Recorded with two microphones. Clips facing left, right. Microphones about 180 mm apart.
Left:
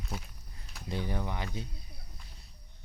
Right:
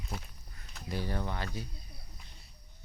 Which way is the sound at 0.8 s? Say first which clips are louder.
Left 1 dB; 20° left (ahead or behind).